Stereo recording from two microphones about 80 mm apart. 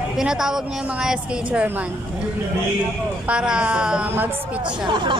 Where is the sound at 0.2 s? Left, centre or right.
Centre.